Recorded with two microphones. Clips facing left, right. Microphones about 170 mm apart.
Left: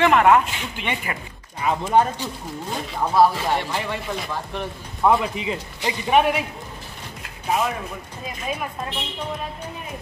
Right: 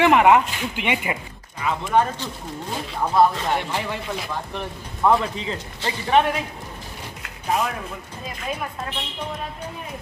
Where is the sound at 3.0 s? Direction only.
5° left (ahead or behind).